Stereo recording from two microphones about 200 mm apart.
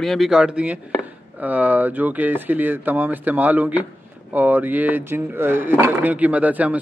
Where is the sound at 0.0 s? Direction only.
Centre (ahead or behind).